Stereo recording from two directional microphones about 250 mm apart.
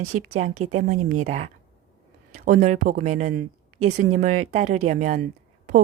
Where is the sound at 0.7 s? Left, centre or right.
Right.